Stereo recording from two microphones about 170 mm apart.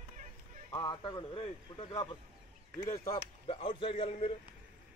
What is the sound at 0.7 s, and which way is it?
A man's voice, 25° left (ahead or behind).